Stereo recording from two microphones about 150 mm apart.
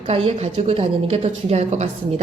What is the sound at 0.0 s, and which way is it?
Speech, 40° right (ahead or behind).